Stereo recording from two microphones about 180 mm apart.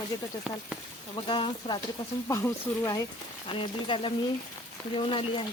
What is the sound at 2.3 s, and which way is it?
Speech, 15° left (ahead or behind).